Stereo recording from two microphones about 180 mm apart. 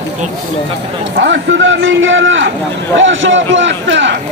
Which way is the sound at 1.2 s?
90° right.